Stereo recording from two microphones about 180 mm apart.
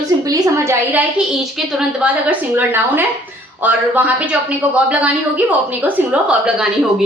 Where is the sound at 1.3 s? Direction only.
5° right (ahead or behind).